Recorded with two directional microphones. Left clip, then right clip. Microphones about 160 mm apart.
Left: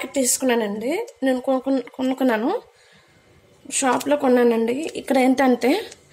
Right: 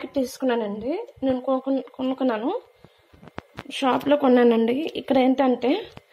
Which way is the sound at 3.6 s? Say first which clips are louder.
Left 2 dB; 20° left (ahead or behind).